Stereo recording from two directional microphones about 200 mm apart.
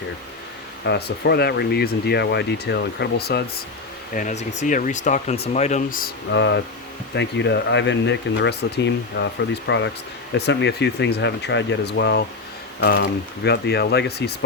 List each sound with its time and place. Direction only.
0.9 s speech: 55° left (ahead or behind)
4.1 s speech: 40° left (ahead or behind)
6.3 s speech: 65° left (ahead or behind)